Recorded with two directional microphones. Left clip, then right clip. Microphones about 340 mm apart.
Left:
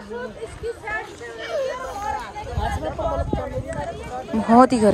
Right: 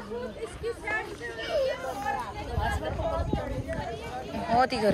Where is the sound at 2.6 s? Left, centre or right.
Left.